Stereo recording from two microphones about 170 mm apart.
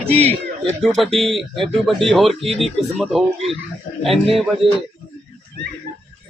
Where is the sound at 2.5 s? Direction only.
Centre (ahead or behind).